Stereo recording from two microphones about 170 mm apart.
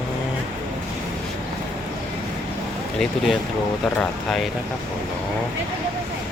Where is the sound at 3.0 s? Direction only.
Centre (ahead or behind).